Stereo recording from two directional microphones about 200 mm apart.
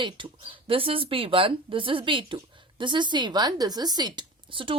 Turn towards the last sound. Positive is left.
turn(degrees=-25)  # may be behind; listen again after turning